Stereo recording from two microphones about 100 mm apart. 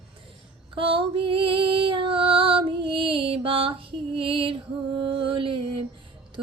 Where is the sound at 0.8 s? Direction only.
60° right (ahead or behind).